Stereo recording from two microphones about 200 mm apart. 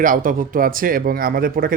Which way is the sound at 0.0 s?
45° right (ahead or behind).